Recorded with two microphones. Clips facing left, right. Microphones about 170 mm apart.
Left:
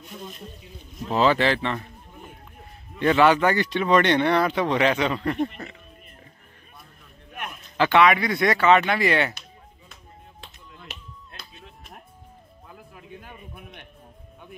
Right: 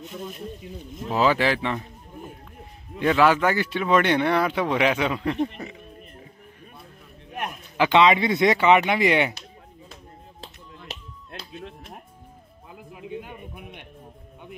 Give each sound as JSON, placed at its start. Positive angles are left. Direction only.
{"t": 1.0, "sound": "speech", "side_deg": -5}
{"t": 3.0, "sound": "speech", "side_deg": 0}
{"t": 7.7, "sound": "speech", "side_deg": -15}
{"t": 12.6, "sound": "music", "side_deg": -15}